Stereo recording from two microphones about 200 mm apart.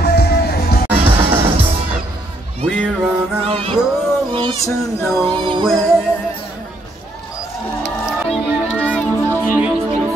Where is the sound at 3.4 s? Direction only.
30° right (ahead or behind).